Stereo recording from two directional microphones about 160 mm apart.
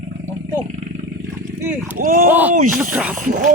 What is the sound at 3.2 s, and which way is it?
Speech, 55° right (ahead or behind).